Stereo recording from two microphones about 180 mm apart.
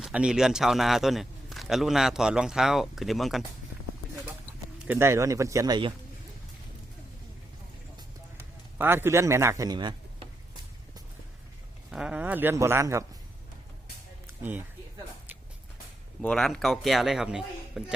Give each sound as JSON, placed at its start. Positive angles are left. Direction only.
{"t": 0.0, "sound": "a man's voice", "side_deg": -5}
{"t": 4.9, "sound": "a man's voice", "side_deg": -15}
{"t": 8.8, "sound": "a man's voice", "side_deg": -10}
{"t": 11.9, "sound": "a man's voice", "side_deg": -5}
{"t": 14.3, "sound": "a sound", "side_deg": -10}
{"t": 16.2, "sound": "a man's voice", "side_deg": 5}